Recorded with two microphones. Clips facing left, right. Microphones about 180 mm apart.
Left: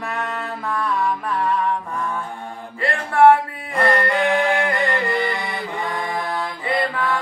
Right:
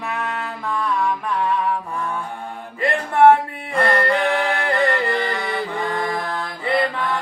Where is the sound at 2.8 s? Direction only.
20° right (ahead or behind).